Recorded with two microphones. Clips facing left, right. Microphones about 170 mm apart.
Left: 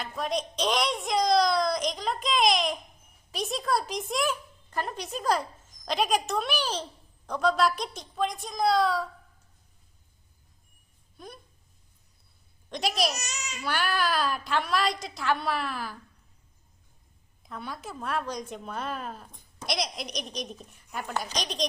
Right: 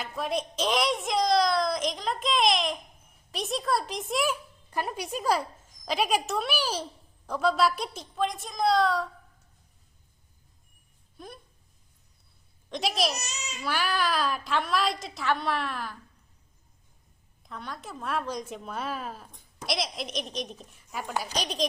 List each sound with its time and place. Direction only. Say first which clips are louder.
0.0 s a sound: even; 5° right (ahead or behind)
3.3 s speech: even; centre (ahead or behind)
11.2 s speech: right 1 dB; centre (ahead or behind)
12.7 s speech: even; centre (ahead or behind)
13.1 s babbling: even; 35° right (ahead or behind)
13.6 s speech: even; centre (ahead or behind)
17.4 s speech: left 1 dB; 5° left (ahead or behind)